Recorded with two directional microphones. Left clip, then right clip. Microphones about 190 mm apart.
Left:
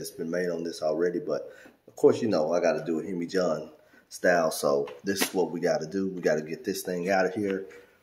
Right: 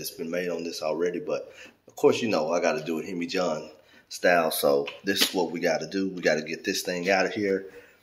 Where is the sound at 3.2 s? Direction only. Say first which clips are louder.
Even; 5° left (ahead or behind).